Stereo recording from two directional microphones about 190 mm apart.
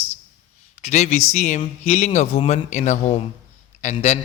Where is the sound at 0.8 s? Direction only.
35° left (ahead or behind).